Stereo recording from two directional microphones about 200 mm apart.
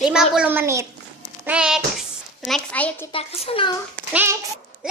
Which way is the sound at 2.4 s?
5° left (ahead or behind).